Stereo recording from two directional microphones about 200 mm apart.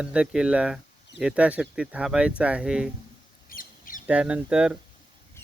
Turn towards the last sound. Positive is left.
turn(degrees=-5)  # may be behind; listen again after turning